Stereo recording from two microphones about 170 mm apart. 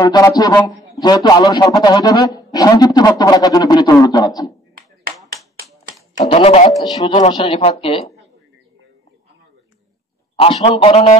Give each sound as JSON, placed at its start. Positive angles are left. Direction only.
{"t": 0.0, "sound": "a man's voice", "side_deg": 20}
{"t": 6.1, "sound": "a man's voice", "side_deg": 35}
{"t": 6.8, "sound": "a man's voice", "side_deg": 25}
{"t": 10.3, "sound": "a man's voice", "side_deg": 35}